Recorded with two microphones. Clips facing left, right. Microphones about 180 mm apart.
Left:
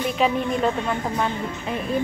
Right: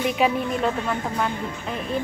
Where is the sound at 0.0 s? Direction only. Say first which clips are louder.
Even; 5° right (ahead or behind).